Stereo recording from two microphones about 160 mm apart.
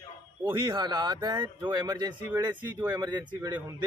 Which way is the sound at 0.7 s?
30° right (ahead or behind).